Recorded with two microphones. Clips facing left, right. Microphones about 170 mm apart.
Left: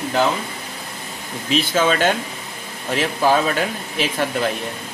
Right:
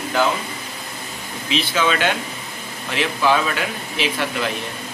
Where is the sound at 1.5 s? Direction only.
45° left (ahead or behind).